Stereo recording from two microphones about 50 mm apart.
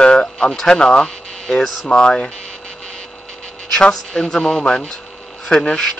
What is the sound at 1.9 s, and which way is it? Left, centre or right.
Speech, centre.